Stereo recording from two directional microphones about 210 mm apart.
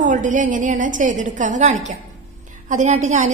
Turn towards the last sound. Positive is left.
turn(degrees=-35)  # may be behind; listen again after turning